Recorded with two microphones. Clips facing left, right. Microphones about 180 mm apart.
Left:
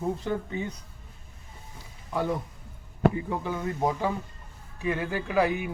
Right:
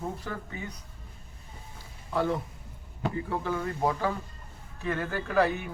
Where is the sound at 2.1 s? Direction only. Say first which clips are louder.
Even; 15° left (ahead or behind).